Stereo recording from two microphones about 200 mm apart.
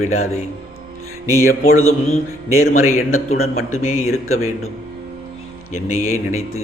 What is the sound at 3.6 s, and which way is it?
Speech, 90° left.